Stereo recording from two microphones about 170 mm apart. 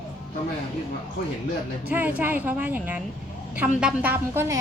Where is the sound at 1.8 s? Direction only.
10° right (ahead or behind).